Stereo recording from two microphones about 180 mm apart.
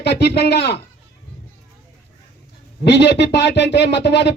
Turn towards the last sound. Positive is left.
turn(degrees=70)  # may be behind; listen again after turning